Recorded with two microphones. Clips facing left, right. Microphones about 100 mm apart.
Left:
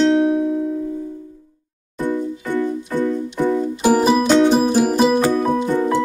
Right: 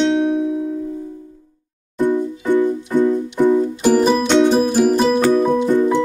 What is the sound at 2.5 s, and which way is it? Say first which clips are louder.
Music: right 5 dB; 15° right (ahead or behind).